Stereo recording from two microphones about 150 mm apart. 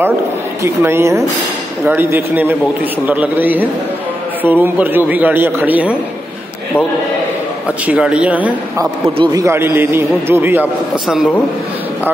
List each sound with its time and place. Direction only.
0.6 s a man's voice: 15° right (ahead or behind)
7.8 s a man's voice: 10° right (ahead or behind)